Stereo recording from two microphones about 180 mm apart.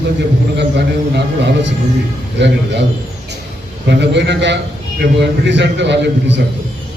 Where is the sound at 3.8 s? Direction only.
75° right (ahead or behind).